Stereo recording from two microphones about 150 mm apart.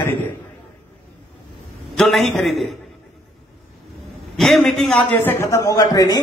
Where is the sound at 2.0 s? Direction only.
Centre (ahead or behind).